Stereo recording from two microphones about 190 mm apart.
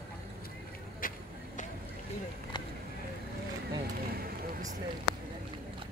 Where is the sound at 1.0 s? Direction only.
45° left (ahead or behind).